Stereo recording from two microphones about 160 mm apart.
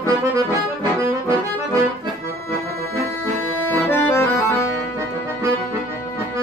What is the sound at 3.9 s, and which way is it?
Accordion, 15° left (ahead or behind).